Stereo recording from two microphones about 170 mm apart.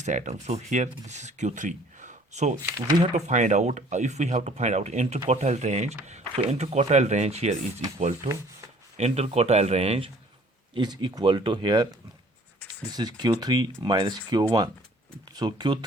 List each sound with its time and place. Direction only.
0.0 s speech: 45° right (ahead or behind)
10.8 s speech: 25° right (ahead or behind)